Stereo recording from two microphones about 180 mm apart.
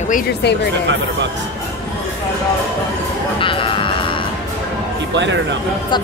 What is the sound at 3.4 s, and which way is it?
Music, 30° left (ahead or behind).